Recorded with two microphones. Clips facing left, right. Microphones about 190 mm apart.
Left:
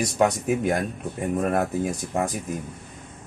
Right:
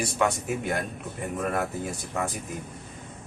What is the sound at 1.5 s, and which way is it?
Speech, 40° left (ahead or behind).